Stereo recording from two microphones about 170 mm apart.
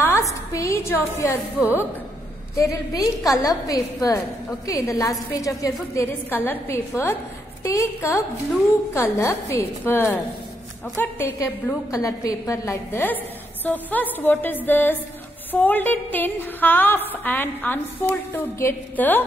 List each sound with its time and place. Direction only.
0.0 s a woman's voice: 15° left (ahead or behind)
2.5 s a woman's voice: 20° left (ahead or behind)